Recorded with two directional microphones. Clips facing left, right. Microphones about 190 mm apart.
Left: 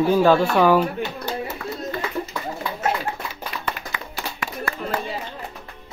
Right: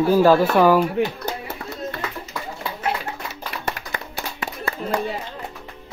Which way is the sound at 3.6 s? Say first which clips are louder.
Right 1 dB; 45° right (ahead or behind).